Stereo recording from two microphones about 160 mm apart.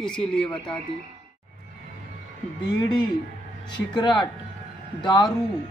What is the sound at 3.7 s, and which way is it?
Speech, 30° left (ahead or behind).